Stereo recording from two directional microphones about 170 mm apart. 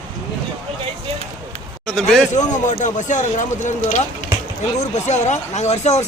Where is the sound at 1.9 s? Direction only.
5° left (ahead or behind).